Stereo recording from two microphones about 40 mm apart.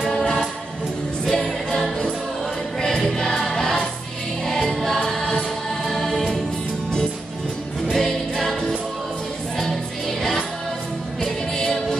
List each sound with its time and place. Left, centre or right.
0.0 s music: centre
2.8 s choir: centre
4.8 s music: centre
7.9 s music: centre
11.5 s music: centre